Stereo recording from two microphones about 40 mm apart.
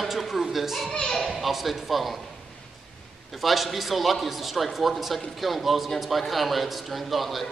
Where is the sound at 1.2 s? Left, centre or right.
Centre.